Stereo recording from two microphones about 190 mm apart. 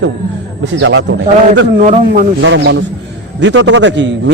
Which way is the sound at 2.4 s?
70° right (ahead or behind).